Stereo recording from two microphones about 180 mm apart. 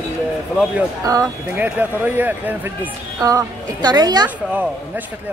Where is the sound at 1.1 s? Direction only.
15° right (ahead or behind).